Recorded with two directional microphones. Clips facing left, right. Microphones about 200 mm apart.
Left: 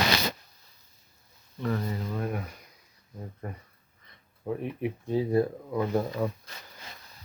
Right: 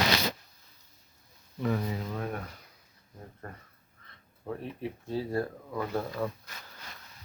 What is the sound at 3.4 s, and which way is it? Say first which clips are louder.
Speech: left 5 dB; 15° left (ahead or behind).